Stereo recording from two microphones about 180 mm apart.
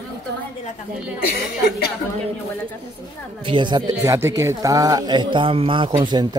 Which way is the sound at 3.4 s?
25° right (ahead or behind).